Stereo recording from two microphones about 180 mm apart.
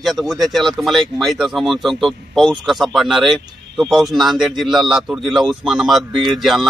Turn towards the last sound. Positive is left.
turn(degrees=0)  # may be behind; listen again after turning